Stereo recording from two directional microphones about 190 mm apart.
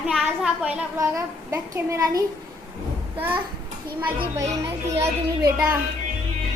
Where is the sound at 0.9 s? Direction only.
15° right (ahead or behind).